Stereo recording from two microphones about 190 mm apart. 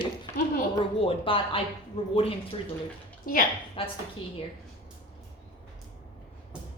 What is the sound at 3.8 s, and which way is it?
Speech, 30° left (ahead or behind).